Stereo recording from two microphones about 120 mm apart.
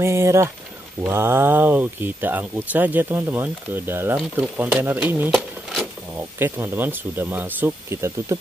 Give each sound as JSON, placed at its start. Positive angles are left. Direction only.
{"t": 0.0, "sound": "speech", "side_deg": -20}